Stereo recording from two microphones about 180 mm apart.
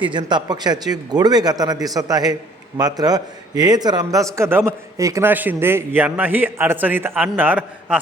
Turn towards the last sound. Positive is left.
turn(degrees=-10)  # may be behind; listen again after turning